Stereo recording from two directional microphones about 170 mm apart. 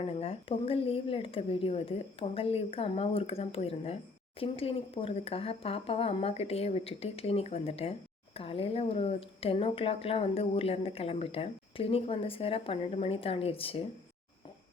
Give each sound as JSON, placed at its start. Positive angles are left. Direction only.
{"t": 0.0, "sound": "speech", "side_deg": 35}